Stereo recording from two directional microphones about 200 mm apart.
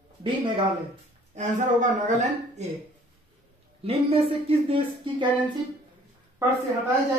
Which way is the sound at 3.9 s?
30° right (ahead or behind).